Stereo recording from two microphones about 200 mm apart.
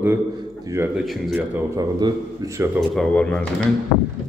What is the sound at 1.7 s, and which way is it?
Speech, 20° right (ahead or behind).